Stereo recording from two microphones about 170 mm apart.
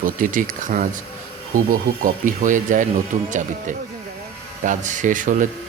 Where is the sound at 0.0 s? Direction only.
55° right (ahead or behind).